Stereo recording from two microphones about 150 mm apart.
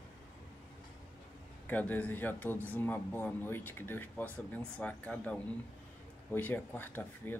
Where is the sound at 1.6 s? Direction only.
10° left (ahead or behind).